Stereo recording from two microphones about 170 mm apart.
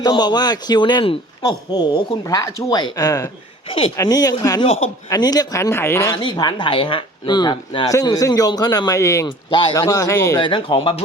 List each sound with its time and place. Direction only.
0.0 s a man's voice: 25° left (ahead or behind)
3.7 s speech: 30° left (ahead or behind)
3.9 s a man's voice: 20° left (ahead or behind)
6.1 s a man's voice: 25° left (ahead or behind)
10.4 s speech: 30° left (ahead or behind)